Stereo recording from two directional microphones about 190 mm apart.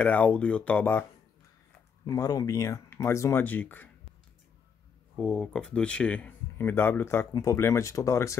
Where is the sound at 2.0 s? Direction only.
15° left (ahead or behind).